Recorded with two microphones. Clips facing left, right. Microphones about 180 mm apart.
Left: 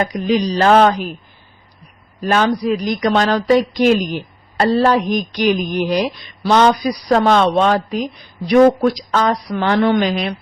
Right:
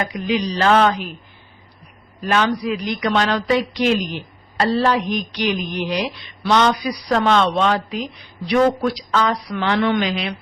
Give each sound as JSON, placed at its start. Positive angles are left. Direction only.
{"t": 0.0, "sound": "speech", "side_deg": 40}
{"t": 2.2, "sound": "speech", "side_deg": 40}